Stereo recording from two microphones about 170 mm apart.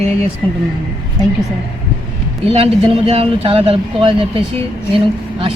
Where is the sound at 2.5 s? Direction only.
35° right (ahead or behind).